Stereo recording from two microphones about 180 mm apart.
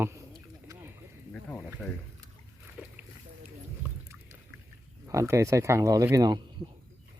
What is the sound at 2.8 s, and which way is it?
Boat, 10° right (ahead or behind).